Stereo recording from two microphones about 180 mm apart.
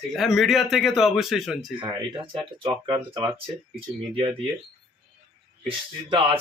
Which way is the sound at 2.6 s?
25° right (ahead or behind).